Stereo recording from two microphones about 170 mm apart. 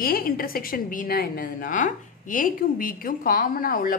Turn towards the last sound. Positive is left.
turn(degrees=55)  # may be behind; listen again after turning